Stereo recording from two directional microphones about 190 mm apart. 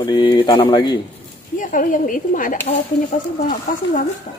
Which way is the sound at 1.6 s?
45° left (ahead or behind).